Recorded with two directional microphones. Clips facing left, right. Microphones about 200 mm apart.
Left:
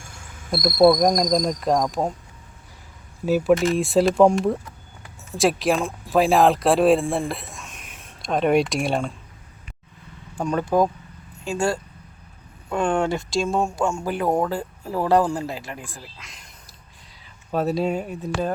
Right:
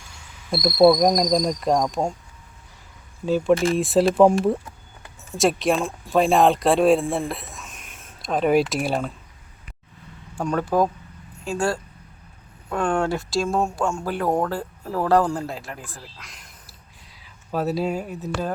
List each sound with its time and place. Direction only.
0.0 s cricket: 50° left (ahead or behind)
0.8 s speech: centre (ahead or behind)
3.2 s speech: 5° left (ahead or behind)
3.5 s speech: 30° right (ahead or behind)
3.8 s speech: centre (ahead or behind)
10.4 s speech: 5° left (ahead or behind)
15.8 s speech: 10° left (ahead or behind)
16.1 s a sound: centre (ahead or behind)
17.5 s speech: 5° right (ahead or behind)